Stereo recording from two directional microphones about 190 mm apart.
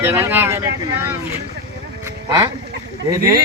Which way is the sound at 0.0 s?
10° right (ahead or behind).